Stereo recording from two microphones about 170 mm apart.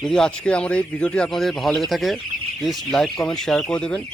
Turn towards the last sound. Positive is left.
turn(degrees=5)  # may be behind; listen again after turning